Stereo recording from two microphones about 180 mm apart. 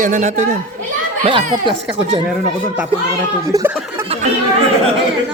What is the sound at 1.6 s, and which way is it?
Speech, 30° right (ahead or behind).